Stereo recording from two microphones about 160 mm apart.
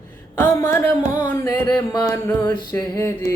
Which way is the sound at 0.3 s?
15° left (ahead or behind).